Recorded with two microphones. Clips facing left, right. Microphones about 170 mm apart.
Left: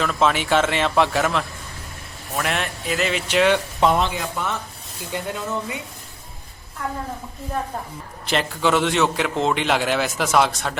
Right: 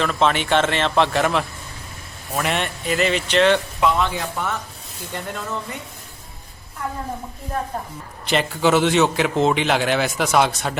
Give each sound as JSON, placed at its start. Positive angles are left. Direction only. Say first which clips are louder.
{"t": 0.0, "sound": "a man's voice", "louder": "right 1 dB", "side_deg": 5}
{"t": 3.8, "sound": "speech", "louder": "left 1 dB", "side_deg": 35}
{"t": 5.1, "sound": "a man's voice", "louder": "left 2 dB", "side_deg": 5}
{"t": 8.3, "sound": "a man's voice", "louder": "right 2 dB", "side_deg": 0}